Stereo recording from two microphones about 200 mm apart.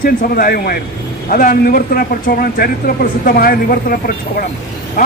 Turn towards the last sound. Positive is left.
turn(degrees=45)  # may be behind; listen again after turning